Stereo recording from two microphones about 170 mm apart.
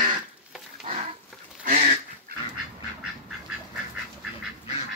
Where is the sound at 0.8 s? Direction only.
35° right (ahead or behind).